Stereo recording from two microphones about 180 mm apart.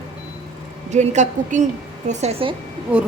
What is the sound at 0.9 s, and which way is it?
A woman's voice, 40° right (ahead or behind).